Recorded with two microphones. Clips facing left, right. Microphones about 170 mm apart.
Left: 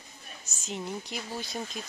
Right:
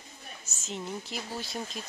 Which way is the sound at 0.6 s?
Centre (ahead or behind).